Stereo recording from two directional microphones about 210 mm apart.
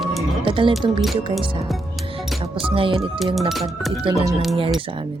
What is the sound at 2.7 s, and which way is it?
Speech, 25° right (ahead or behind).